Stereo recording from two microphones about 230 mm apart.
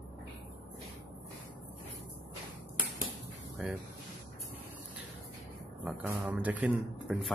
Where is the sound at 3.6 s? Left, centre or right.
Centre.